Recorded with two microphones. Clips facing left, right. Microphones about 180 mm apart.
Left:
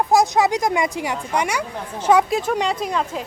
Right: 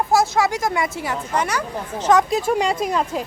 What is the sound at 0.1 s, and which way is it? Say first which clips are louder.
Speech: left 2 dB; 20° left (ahead or behind).